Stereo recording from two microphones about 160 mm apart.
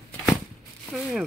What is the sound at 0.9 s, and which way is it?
Speech, 5° right (ahead or behind).